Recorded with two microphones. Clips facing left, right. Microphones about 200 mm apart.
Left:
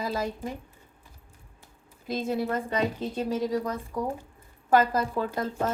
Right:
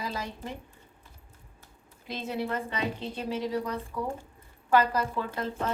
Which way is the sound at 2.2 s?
40° left (ahead or behind).